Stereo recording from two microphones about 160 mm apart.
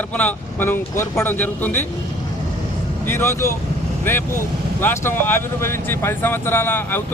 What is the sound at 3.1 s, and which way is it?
Speech, 15° left (ahead or behind).